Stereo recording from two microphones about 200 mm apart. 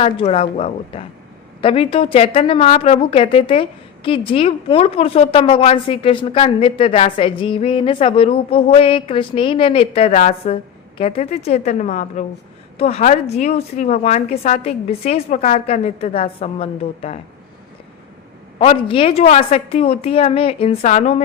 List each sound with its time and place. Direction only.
0.0 s a woman's voice: 30° left (ahead or behind)
18.6 s a woman's voice: 25° left (ahead or behind)